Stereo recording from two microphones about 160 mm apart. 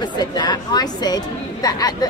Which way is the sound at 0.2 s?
25° left (ahead or behind).